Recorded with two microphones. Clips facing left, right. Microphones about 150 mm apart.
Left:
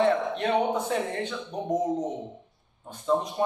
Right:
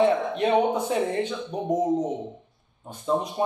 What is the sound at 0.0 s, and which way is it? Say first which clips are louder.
Speech: right 2 dB; 15° right (ahead or behind).